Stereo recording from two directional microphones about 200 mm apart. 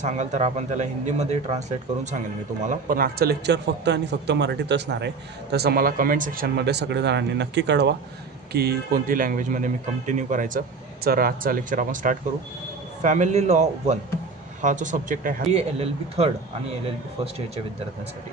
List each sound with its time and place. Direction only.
0.0 s a man's voice: 35° right (ahead or behind)
15.5 s a man's voice: 30° right (ahead or behind)